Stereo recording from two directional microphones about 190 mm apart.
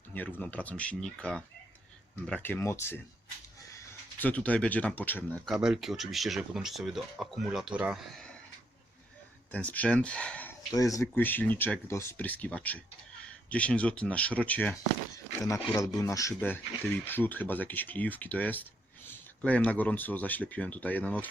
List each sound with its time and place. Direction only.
0.1 s speech: 10° left (ahead or behind)
9.5 s speech: 10° left (ahead or behind)
10.8 s speech: 20° left (ahead or behind)